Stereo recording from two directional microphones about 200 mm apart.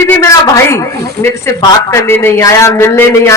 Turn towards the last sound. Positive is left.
turn(degrees=15)  # may be behind; listen again after turning